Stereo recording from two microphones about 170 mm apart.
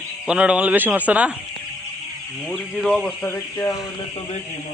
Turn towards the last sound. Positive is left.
turn(degrees=15)  # may be behind; listen again after turning